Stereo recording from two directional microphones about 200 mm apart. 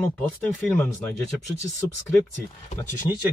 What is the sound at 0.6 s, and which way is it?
Speech, 5° left (ahead or behind).